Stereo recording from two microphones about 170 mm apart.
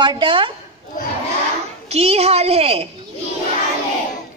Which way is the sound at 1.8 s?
35° right (ahead or behind).